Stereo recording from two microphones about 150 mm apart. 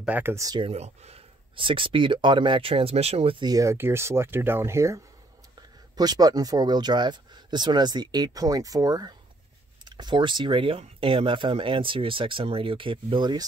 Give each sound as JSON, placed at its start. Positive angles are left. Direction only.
{"t": 0.0, "sound": "speech", "side_deg": -10}
{"t": 0.6, "sound": "speech", "side_deg": -45}